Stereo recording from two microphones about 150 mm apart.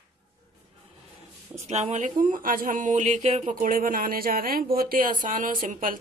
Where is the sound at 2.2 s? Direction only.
65° right (ahead or behind).